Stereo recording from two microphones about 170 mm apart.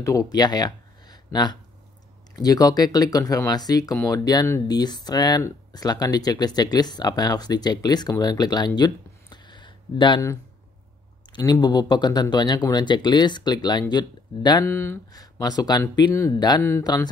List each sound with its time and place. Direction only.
0.0 s speech: 20° left (ahead or behind)
11.3 s speech: 25° left (ahead or behind)
14.6 s speech: 15° left (ahead or behind)